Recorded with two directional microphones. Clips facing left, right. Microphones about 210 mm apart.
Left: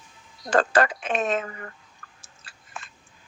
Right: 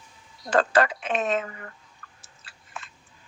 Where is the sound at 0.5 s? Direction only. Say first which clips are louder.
Even; 45° left (ahead or behind).